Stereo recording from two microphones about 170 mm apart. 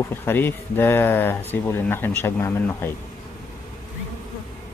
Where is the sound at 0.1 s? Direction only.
10° left (ahead or behind).